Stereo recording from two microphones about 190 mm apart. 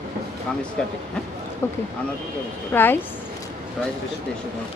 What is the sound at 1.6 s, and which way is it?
A woman's voice, 10° left (ahead or behind).